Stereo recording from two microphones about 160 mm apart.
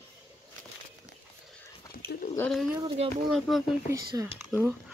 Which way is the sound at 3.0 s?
40° right (ahead or behind).